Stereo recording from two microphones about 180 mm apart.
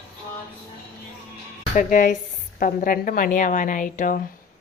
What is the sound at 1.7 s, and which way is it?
A woman's voice, 45° left (ahead or behind).